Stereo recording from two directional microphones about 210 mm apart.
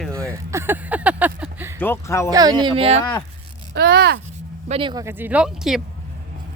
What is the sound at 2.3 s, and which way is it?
Speech, 20° right (ahead or behind).